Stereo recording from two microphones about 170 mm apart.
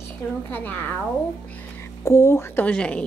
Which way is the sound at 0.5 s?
10° left (ahead or behind).